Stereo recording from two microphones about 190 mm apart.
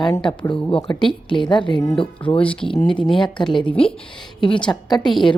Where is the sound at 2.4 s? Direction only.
5° left (ahead or behind).